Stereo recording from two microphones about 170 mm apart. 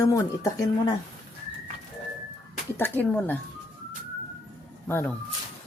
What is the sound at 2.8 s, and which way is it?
Speech, 10° left (ahead or behind).